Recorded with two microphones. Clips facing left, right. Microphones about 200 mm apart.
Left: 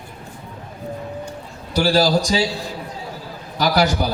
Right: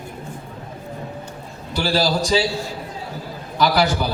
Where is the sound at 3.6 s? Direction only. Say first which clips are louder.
Even; 45° left (ahead or behind).